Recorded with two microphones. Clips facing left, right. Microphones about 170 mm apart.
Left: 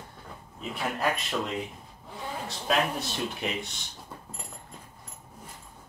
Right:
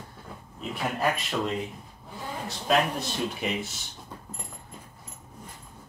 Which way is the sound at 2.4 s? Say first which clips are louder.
Right 3 dB; centre (ahead or behind).